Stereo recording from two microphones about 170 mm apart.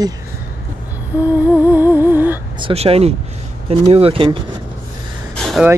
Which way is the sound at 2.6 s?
35° right (ahead or behind).